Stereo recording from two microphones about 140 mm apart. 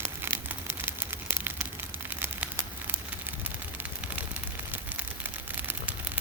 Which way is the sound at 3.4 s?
10° right (ahead or behind).